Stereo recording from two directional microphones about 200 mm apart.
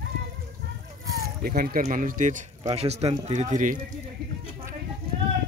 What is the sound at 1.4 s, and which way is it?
Speech, 45° right (ahead or behind).